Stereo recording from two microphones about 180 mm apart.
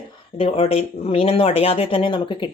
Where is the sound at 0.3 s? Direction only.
30° left (ahead or behind).